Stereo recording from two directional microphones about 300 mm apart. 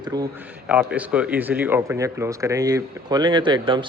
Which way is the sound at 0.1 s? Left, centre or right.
Centre.